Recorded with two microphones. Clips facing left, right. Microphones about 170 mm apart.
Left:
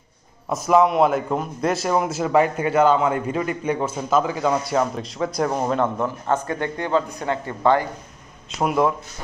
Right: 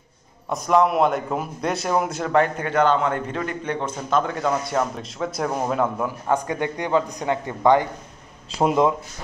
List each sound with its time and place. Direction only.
0.5 s a man's voice: 5° left (ahead or behind); by 7.9 s 15° right (ahead or behind)
8.5 s speech: 30° right (ahead or behind)